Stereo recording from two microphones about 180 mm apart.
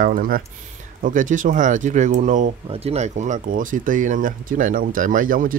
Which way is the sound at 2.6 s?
35° right (ahead or behind).